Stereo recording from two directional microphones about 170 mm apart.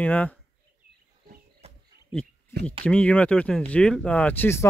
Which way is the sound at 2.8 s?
5° left (ahead or behind).